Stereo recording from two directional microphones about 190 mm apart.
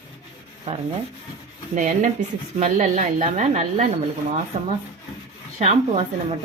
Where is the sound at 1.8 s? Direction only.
40° right (ahead or behind).